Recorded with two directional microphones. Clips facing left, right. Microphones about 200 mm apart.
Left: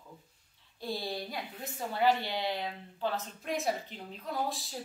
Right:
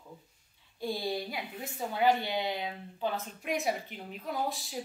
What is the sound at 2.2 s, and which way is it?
Speech, 20° right (ahead or behind).